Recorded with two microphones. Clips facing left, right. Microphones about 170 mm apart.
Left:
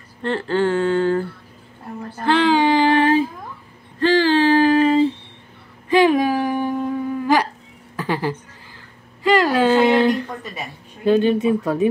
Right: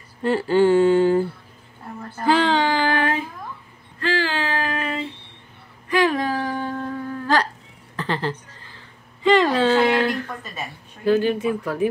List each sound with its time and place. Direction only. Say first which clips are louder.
0.2 s a sound: right 2 dB; 10° right (ahead or behind)
2.2 s speech: left 2 dB; 5° right (ahead or behind)
2.5 s music: left 5 dB; 20° left (ahead or behind)
4.0 s female singing: left 8 dB; 35° left (ahead or behind)
5.9 s a sound: left 5 dB; 20° left (ahead or behind)
9.2 s speech: left 1 dB; 5° left (ahead or behind); by 11.9 s 25° left (ahead or behind)